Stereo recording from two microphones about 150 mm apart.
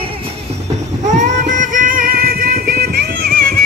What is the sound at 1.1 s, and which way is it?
Music, 55° right (ahead or behind).